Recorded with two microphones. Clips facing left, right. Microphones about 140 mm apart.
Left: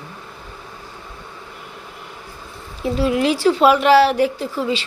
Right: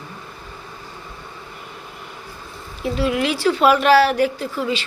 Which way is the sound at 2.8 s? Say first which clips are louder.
Left 3 dB; 30° left (ahead or behind).